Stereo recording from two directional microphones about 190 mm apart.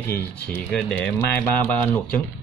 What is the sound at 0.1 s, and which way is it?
Speech, 10° left (ahead or behind).